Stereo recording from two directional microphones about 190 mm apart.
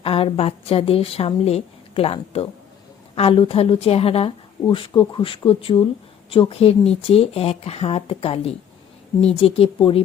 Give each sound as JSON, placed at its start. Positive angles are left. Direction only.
{"t": 0.0, "sound": "a woman's voice", "side_deg": 30}